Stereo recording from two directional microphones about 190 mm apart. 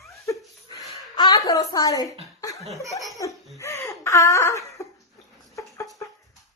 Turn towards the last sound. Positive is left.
turn(degrees=15)  # may be behind; listen again after turning